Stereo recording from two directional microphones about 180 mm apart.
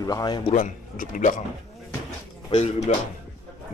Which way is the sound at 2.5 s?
40° left (ahead or behind).